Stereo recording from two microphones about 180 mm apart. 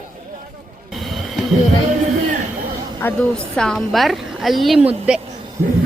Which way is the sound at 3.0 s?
5° left (ahead or behind).